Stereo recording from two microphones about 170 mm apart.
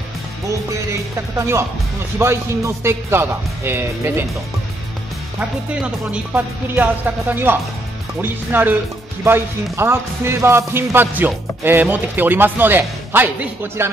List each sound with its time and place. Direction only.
0.5 s music: 20° right (ahead or behind)
2.1 s speech: 15° right (ahead or behind)
6.3 s speech: 10° right (ahead or behind)